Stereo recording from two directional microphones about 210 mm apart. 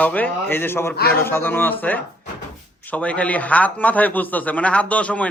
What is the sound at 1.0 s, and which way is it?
Speech, 50° left (ahead or behind).